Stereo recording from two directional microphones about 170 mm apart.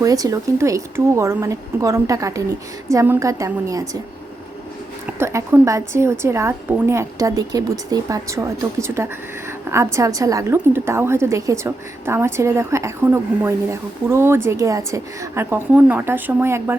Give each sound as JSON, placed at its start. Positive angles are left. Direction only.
{"t": 0.0, "sound": "a woman's voice", "side_deg": -20}
{"t": 5.0, "sound": "a woman's voice", "side_deg": -15}